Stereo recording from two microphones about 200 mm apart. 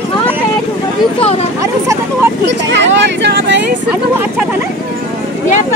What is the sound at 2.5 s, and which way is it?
Speech, 60° right (ahead or behind).